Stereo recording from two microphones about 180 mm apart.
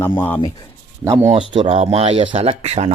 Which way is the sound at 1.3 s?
30° right (ahead or behind).